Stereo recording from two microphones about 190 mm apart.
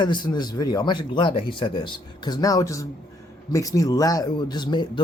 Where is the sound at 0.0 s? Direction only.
25° left (ahead or behind).